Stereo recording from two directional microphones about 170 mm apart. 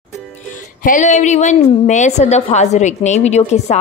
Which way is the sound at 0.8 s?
45° left (ahead or behind).